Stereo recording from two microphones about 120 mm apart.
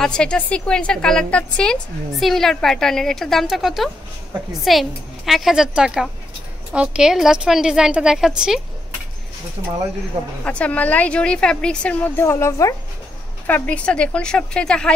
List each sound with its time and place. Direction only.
0.0 s a woman's voice: 5° left (ahead or behind)
10.4 s a woman's voice: 10° left (ahead or behind)
13.5 s a woman's voice: 10° left (ahead or behind)